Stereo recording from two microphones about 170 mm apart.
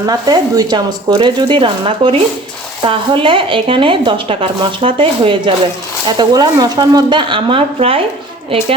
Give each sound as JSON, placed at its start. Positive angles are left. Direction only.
{"t": 0.0, "sound": "speech", "side_deg": -20}